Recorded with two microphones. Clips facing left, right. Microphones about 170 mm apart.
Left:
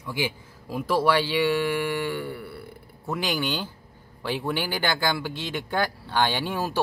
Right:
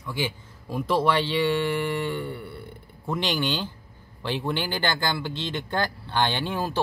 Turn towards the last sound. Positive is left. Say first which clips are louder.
# even
turn(degrees=10)  # may be behind; listen again after turning